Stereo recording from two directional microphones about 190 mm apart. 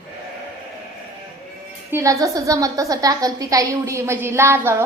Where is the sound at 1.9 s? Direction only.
15° right (ahead or behind).